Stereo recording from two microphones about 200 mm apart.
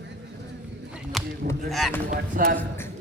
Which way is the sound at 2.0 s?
45° right (ahead or behind).